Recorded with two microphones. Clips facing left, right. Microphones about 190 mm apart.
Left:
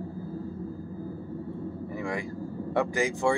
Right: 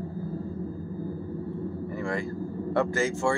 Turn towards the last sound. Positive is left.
turn(degrees=15)  # may be behind; listen again after turning